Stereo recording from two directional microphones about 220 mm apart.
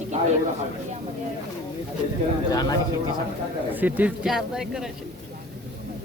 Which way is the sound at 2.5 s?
15° left (ahead or behind).